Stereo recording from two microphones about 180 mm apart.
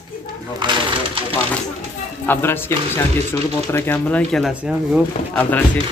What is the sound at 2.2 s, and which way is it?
Speech, 10° left (ahead or behind).